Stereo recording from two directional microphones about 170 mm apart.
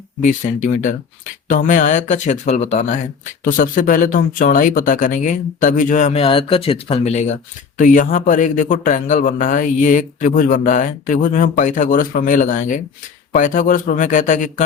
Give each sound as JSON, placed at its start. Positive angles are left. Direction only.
{"t": 0.2, "sound": "a man's voice", "side_deg": 50}
{"t": 3.4, "sound": "a man's voice", "side_deg": 55}